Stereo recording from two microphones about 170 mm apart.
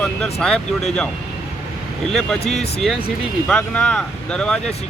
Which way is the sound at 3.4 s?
5° left (ahead or behind).